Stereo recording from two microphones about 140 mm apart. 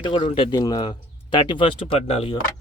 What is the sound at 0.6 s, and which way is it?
Speech, 25° left (ahead or behind).